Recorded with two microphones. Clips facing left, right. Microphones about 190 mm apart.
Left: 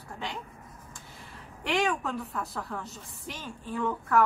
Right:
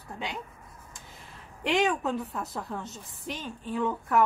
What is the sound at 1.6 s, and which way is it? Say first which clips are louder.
Speech: right 2 dB; 20° right (ahead or behind).